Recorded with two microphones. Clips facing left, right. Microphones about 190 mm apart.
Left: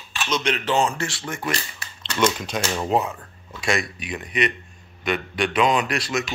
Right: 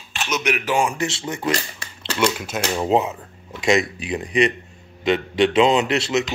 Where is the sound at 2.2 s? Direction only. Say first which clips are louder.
Even; 10° right (ahead or behind).